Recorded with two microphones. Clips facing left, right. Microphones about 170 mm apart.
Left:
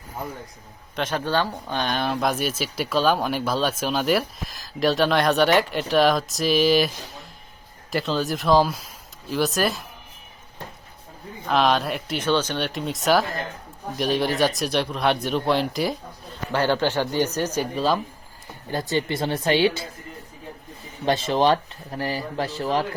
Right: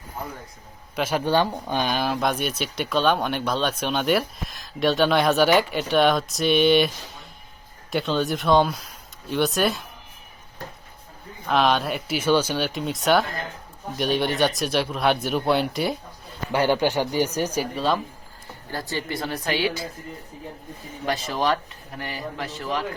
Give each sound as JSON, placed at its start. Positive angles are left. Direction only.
{"t": 0.9, "sound": "speech", "side_deg": -10}
{"t": 11.4, "sound": "speech", "side_deg": 0}
{"t": 16.5, "sound": "speech", "side_deg": -15}
{"t": 17.7, "sound": "speech", "side_deg": 0}
{"t": 18.7, "sound": "speech", "side_deg": 20}
{"t": 21.0, "sound": "speech", "side_deg": 25}